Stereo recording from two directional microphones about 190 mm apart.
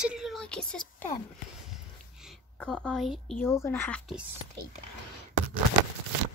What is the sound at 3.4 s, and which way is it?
Speech, 15° left (ahead or behind).